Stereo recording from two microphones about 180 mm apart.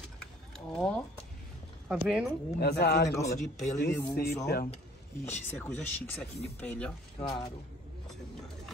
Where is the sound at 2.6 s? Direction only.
65° left (ahead or behind).